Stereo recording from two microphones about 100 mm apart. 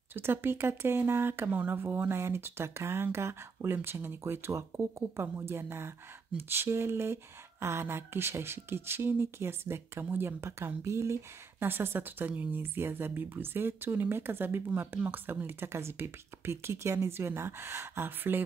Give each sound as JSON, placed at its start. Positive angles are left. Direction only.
{"t": 0.1, "sound": "speech", "side_deg": -25}